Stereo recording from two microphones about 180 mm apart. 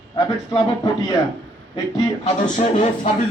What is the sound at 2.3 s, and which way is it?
Speech, 40° left (ahead or behind).